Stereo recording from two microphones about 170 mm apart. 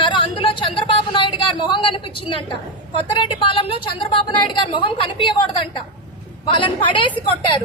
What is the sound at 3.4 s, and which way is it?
A woman's voice, 30° left (ahead or behind).